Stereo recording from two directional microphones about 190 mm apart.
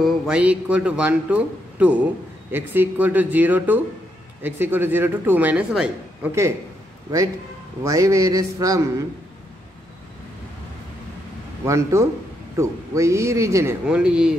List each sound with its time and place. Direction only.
0.0 s speech: 5° right (ahead or behind)
7.8 s speech: 15° right (ahead or behind)
11.6 s speech: 15° right (ahead or behind)
13.8 s speech: 5° right (ahead or behind)